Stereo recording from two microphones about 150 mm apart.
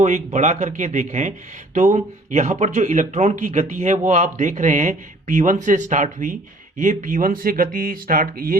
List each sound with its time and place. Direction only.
0.0 s speech: 55° right (ahead or behind); by 8.5 s 70° right (ahead or behind)